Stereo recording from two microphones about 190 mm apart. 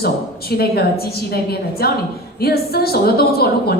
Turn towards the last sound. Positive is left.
turn(degrees=55)  # may be behind; listen again after turning